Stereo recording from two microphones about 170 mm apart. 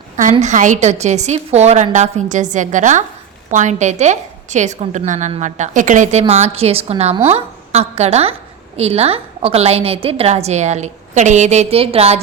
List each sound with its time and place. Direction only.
0.2 s a woman's voice: 45° right (ahead or behind)